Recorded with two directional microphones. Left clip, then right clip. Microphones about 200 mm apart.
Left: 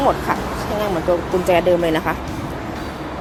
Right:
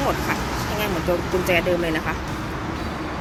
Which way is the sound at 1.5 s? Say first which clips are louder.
Left 6 dB; 20° left (ahead or behind).